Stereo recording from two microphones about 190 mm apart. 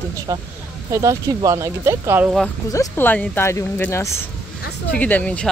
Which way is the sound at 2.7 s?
15° left (ahead or behind).